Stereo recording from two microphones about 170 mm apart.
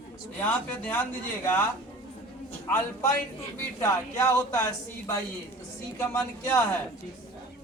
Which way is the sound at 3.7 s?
15° left (ahead or behind).